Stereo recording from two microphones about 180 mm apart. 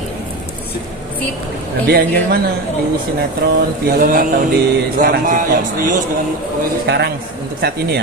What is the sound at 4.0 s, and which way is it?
Speech, 50° right (ahead or behind).